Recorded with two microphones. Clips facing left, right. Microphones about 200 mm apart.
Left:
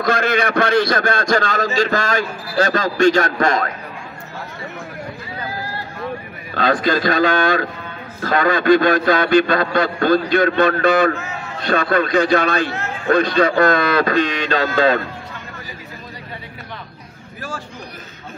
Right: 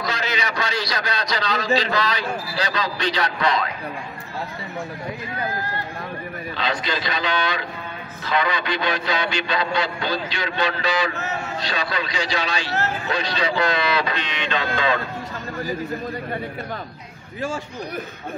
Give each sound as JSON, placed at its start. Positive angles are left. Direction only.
{"t": 0.0, "sound": "a man's voice", "side_deg": 55}
{"t": 6.5, "sound": "a man's voice", "side_deg": 50}